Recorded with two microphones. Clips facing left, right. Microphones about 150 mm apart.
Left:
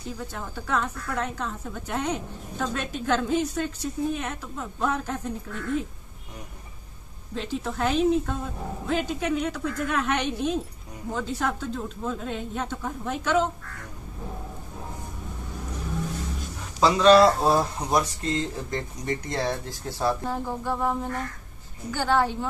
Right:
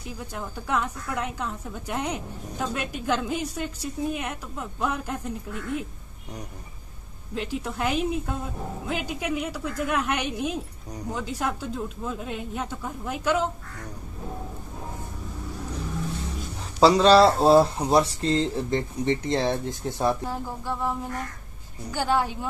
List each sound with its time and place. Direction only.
0.0 s a woman's voice: 10° right (ahead or behind)
7.3 s a woman's voice: 10° right (ahead or behind)
16.8 s speech: 30° right (ahead or behind)
20.2 s a sound: centre (ahead or behind)
21.9 s a woman's voice: 10° right (ahead or behind)